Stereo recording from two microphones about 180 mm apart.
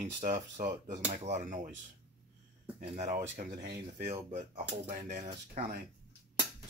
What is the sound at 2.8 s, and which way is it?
Speech, 40° right (ahead or behind).